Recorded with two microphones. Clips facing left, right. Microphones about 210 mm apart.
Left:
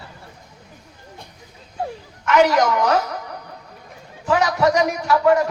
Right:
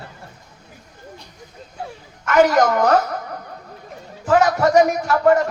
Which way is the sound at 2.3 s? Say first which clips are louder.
Right 1 dB; 50° right (ahead or behind).